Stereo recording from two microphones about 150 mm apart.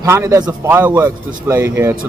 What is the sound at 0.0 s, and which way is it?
Speech, 20° right (ahead or behind).